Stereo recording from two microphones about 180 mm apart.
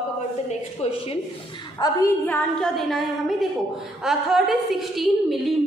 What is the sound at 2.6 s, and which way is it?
A woman's voice, centre (ahead or behind).